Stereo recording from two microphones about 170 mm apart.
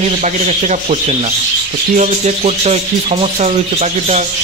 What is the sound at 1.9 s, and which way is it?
Speech, 45° right (ahead or behind).